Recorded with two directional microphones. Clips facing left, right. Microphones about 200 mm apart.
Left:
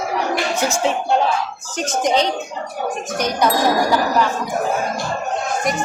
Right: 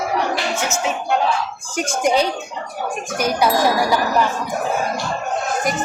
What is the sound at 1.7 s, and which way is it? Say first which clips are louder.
Music: even; 10° right (ahead or behind).